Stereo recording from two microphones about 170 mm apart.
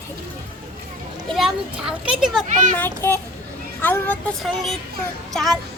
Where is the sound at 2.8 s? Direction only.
15° left (ahead or behind).